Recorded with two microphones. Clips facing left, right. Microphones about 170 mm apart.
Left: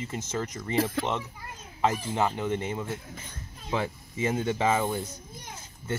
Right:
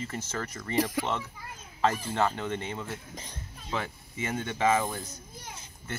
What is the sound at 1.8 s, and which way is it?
Speech, 15° left (ahead or behind).